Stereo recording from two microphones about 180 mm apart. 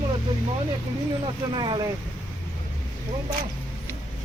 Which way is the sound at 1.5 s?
25° right (ahead or behind).